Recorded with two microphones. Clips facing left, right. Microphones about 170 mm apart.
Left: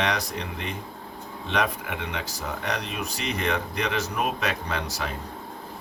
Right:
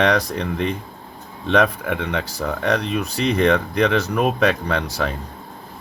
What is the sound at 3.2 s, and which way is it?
Speech, 70° right (ahead or behind).